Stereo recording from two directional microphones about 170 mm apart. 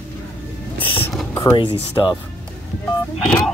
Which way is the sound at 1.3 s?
15° left (ahead or behind).